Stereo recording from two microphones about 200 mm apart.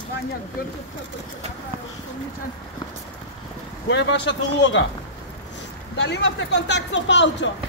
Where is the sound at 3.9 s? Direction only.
60° left (ahead or behind).